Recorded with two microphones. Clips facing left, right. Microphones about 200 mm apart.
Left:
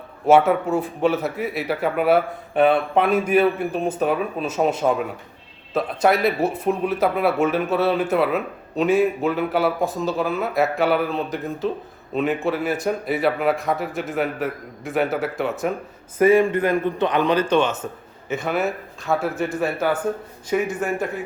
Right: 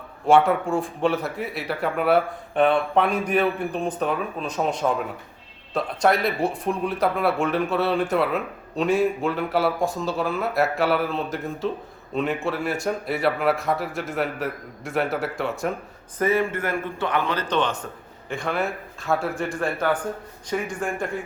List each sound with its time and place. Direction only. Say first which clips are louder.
0.3 s a man's voice: left 2 dB; 5° left (ahead or behind)
16.1 s a man's voice: left 7 dB; 10° left (ahead or behind)